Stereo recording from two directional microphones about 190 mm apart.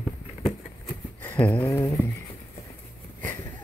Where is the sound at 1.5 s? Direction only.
15° left (ahead or behind).